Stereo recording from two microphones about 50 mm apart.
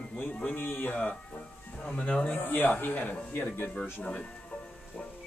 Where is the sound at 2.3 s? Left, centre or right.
Left.